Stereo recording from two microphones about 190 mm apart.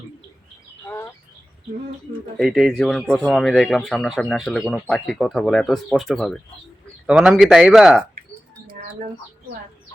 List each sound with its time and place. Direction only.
0.9 s bird: 10° left (ahead or behind)
2.4 s speech: 5° right (ahead or behind)